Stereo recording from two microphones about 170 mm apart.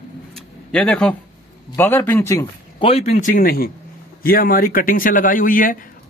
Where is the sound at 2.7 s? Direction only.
35° left (ahead or behind).